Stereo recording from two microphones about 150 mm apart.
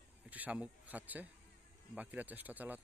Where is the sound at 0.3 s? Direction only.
10° right (ahead or behind).